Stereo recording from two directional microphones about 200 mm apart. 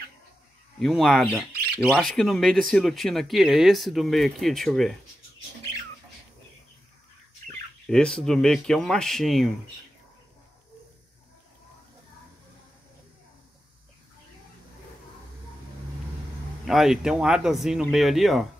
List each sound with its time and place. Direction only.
0.7 s speech: centre (ahead or behind)
1.5 s squawk: 50° right (ahead or behind)
1.8 s speech: centre (ahead or behind)
7.8 s speech: 5° left (ahead or behind)
16.6 s speech: centre (ahead or behind)